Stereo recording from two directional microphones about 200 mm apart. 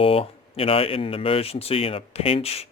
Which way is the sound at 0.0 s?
30° left (ahead or behind).